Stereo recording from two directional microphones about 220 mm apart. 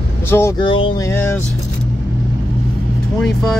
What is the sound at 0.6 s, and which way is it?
Music, 25° left (ahead or behind).